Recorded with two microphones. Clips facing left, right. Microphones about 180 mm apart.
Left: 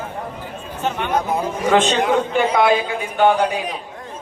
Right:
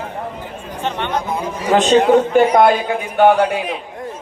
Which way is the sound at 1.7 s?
45° right (ahead or behind).